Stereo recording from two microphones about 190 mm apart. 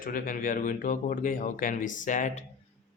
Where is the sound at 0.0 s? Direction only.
45° left (ahead or behind).